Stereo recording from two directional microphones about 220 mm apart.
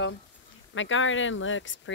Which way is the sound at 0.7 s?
60° left (ahead or behind).